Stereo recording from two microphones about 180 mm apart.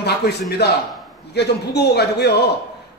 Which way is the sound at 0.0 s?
65° left (ahead or behind).